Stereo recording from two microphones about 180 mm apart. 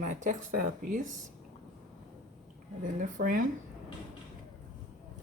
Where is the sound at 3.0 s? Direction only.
50° right (ahead or behind).